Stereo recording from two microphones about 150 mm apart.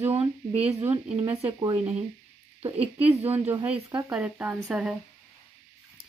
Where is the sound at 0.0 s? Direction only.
45° right (ahead or behind).